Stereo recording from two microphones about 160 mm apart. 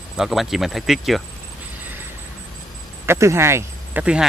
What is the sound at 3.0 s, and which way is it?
Speech, 15° right (ahead or behind).